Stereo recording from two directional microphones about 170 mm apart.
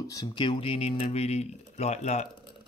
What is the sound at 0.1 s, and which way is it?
Speech, 25° left (ahead or behind).